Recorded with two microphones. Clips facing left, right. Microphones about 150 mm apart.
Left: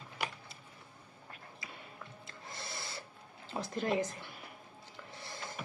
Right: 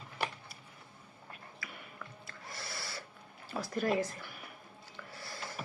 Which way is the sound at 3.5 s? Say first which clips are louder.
Right 1 dB; 20° left (ahead or behind).